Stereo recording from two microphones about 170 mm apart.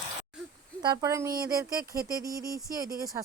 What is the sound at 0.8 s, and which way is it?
Speech, 20° right (ahead or behind).